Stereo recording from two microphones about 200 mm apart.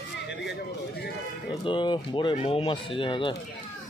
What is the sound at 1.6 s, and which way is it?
Speech, 25° left (ahead or behind).